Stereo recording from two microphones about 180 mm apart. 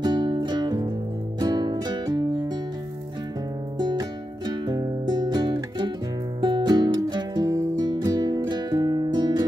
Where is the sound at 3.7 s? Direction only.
25° right (ahead or behind).